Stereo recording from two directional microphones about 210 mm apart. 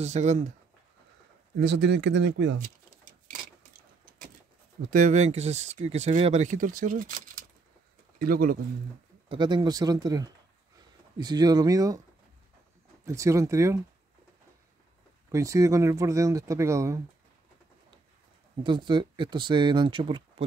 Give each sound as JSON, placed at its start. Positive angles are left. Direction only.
{"t": 0.0, "sound": "speech", "side_deg": -35}
{"t": 1.6, "sound": "speech", "side_deg": -55}
{"t": 2.6, "sound": "pigeon", "side_deg": -40}
{"t": 4.9, "sound": "speech", "side_deg": -35}
{"t": 9.3, "sound": "speech", "side_deg": -20}
{"t": 13.0, "sound": "speech", "side_deg": -15}
{"t": 15.3, "sound": "speech", "side_deg": -15}
{"t": 18.6, "sound": "speech", "side_deg": -20}